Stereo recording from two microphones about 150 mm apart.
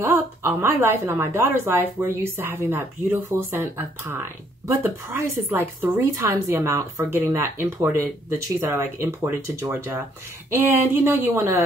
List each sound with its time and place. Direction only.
0.0 s a woman's voice: 15° right (ahead or behind)